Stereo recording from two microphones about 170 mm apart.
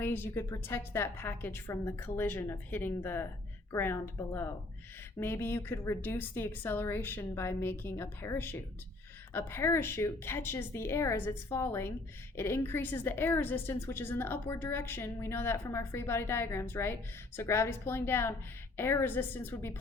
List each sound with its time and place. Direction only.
0.0 s a woman's voice: 15° left (ahead or behind)